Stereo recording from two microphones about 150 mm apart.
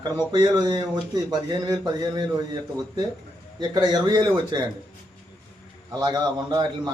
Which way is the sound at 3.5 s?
25° right (ahead or behind).